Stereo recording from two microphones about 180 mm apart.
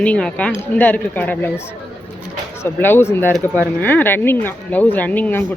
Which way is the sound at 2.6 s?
10° left (ahead or behind).